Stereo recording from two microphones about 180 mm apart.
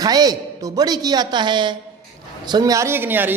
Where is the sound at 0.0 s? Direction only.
20° right (ahead or behind).